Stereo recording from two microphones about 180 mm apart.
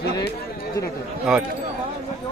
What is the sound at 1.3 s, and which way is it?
Speech, 5° right (ahead or behind).